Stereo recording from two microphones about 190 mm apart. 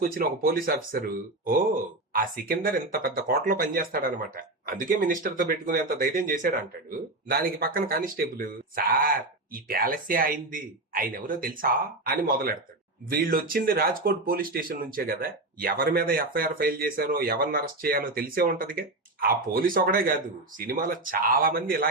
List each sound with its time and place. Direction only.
0.0 s speech: 50° right (ahead or behind)